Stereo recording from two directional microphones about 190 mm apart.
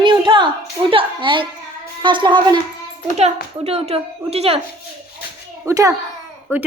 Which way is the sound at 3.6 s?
30° right (ahead or behind).